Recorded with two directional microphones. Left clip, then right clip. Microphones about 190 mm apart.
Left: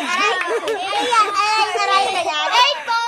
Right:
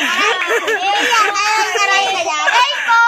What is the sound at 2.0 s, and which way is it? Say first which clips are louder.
Speech: right 3 dB; 35° right (ahead or behind).